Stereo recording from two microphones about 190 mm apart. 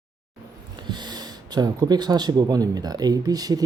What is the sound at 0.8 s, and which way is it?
Speech, 25° right (ahead or behind).